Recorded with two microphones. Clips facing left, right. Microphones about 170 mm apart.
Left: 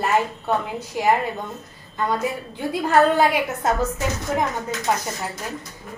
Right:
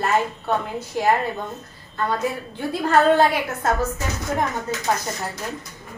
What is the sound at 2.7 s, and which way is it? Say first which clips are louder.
A woman's voice: even; 10° left (ahead or behind).